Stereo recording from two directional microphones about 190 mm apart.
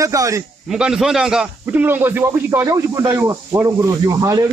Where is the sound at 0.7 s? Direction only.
5° right (ahead or behind).